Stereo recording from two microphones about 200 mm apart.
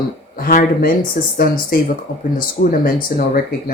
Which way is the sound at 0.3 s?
45° left (ahead or behind).